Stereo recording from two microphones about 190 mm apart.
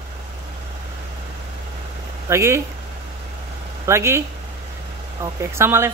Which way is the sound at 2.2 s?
15° right (ahead or behind).